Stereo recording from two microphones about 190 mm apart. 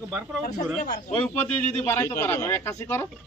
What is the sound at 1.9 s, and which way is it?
A man's voice, 10° left (ahead or behind).